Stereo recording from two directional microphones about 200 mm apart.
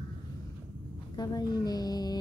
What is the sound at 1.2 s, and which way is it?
Music, 20° left (ahead or behind).